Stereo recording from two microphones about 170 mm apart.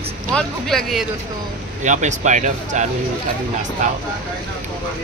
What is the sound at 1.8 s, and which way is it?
Speech, 45° right (ahead or behind).